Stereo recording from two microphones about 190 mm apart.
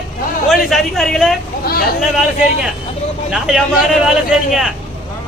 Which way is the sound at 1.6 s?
55° left (ahead or behind).